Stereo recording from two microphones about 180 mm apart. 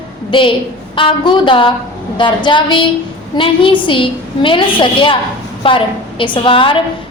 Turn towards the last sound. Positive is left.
turn(degrees=30)  # may be behind; listen again after turning